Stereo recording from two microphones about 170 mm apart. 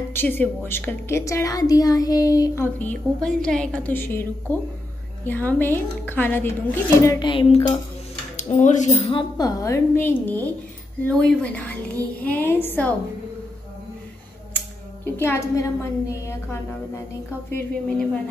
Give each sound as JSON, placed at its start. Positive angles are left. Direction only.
{"t": 0.1, "sound": "a woman's voice", "side_deg": 15}
{"t": 7.2, "sound": "speech", "side_deg": 30}
{"t": 8.4, "sound": "speech", "side_deg": 45}
{"t": 9.1, "sound": "a woman's voice", "side_deg": 20}
{"t": 15.1, "sound": "a woman's voice", "side_deg": 15}